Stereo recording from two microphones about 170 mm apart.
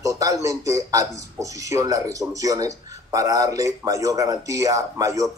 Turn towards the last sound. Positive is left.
turn(degrees=-20)  # may be behind; listen again after turning